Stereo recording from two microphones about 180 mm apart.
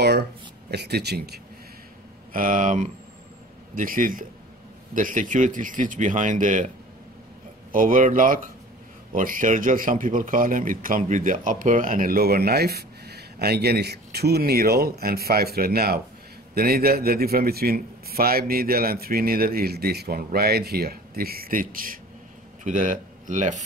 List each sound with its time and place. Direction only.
0.7 s speech: 65° right (ahead or behind)
2.3 s speech: 50° right (ahead or behind)
7.7 s speech: 50° right (ahead or behind)